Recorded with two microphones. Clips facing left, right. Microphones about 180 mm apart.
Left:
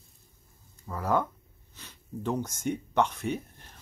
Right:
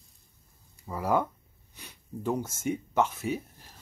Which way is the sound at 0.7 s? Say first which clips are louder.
Right 1 dB; 10° right (ahead or behind).